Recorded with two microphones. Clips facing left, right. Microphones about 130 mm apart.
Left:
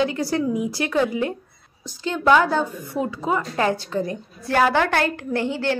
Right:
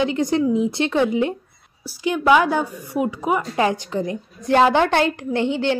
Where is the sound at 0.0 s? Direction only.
20° right (ahead or behind).